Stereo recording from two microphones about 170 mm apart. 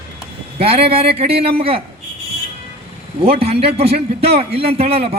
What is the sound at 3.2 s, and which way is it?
A man's voice, 35° right (ahead or behind).